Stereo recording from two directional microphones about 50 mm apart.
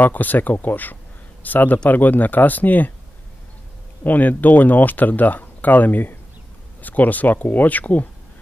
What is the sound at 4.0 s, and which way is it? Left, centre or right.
Speech, left.